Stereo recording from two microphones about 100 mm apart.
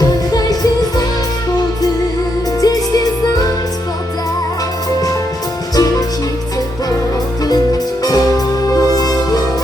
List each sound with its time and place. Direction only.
0.0 s music: 40° left (ahead or behind)
2.6 s music: 40° left (ahead or behind)
5.7 s music: 40° left (ahead or behind)
7.4 s music: 40° left (ahead or behind)